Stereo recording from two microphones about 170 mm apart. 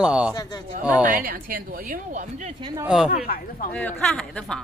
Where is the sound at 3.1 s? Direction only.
60° left (ahead or behind).